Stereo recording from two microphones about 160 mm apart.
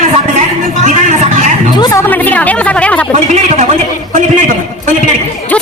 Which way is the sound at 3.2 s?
50° right (ahead or behind).